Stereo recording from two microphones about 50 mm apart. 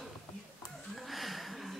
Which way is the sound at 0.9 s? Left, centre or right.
Centre.